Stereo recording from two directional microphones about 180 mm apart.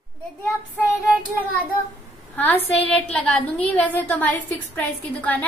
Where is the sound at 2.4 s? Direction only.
10° left (ahead or behind).